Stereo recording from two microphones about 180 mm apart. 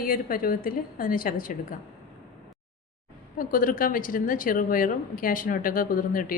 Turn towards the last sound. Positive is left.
turn(degrees=50)  # may be behind; listen again after turning